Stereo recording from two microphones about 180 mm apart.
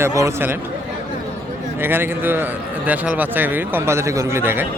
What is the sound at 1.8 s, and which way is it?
A man's voice, 10° right (ahead or behind).